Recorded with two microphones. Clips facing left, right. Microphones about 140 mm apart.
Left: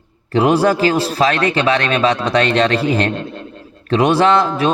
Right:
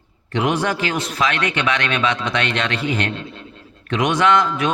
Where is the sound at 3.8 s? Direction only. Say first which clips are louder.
Left 5 dB; 35° left (ahead or behind).